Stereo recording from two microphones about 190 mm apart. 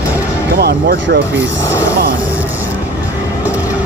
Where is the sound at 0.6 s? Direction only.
55° right (ahead or behind).